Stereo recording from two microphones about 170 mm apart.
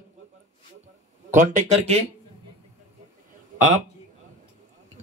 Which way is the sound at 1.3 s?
45° right (ahead or behind).